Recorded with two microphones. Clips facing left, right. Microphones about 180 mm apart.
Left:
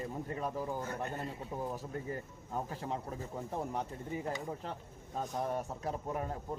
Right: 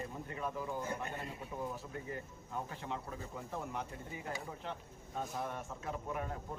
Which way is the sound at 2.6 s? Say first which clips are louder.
Left 4 dB; 35° left (ahead or behind).